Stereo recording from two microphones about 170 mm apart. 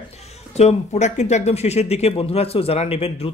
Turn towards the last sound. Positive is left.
turn(degrees=35)  # may be behind; listen again after turning